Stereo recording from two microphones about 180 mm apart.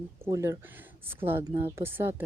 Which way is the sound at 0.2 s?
15° right (ahead or behind).